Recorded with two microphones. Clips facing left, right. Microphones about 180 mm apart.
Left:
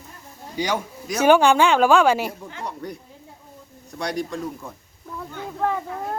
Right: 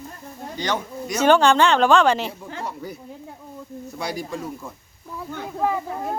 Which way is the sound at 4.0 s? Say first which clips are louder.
Left 3 dB; 5° right (ahead or behind).